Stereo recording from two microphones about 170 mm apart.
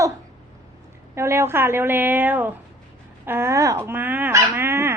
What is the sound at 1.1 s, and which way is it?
Speech, 15° right (ahead or behind).